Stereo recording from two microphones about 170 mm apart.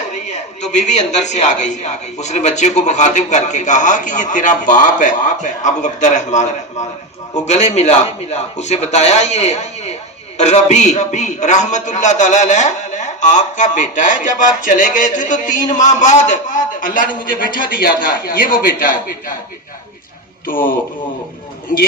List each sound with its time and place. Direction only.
0.3 s a man's voice: 45° left (ahead or behind)
20.5 s speech: 55° left (ahead or behind)